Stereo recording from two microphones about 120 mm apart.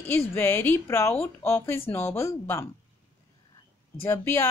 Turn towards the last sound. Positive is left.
turn(degrees=20)  # may be behind; listen again after turning